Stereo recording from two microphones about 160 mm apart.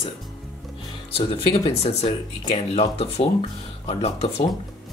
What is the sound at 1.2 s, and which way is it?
Speech, 40° left (ahead or behind).